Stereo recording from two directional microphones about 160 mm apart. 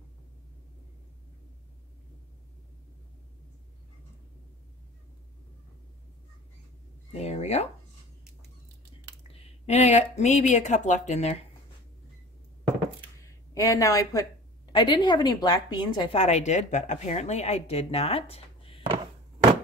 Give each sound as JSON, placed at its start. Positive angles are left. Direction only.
{"t": 7.1, "sound": "a sound", "side_deg": 45}
{"t": 9.3, "sound": "speech", "side_deg": 45}
{"t": 13.2, "sound": "a woman's voice", "side_deg": 20}